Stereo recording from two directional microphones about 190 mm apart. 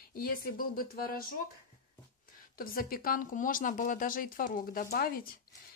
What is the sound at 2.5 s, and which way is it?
A woman's voice, 50° left (ahead or behind).